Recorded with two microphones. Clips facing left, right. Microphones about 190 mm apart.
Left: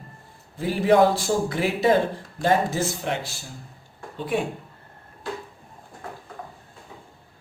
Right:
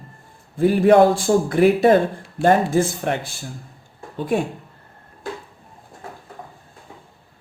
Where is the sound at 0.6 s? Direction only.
55° right (ahead or behind).